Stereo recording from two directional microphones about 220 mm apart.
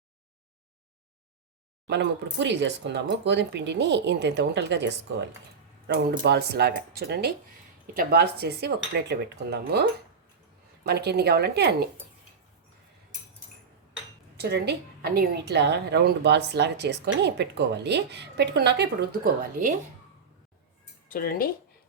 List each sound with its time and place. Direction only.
1.9 s a woman's voice: 50° right (ahead or behind)
10.8 s a woman's voice: 45° right (ahead or behind)
14.3 s a woman's voice: 50° right (ahead or behind)
21.1 s speech: 40° left (ahead or behind)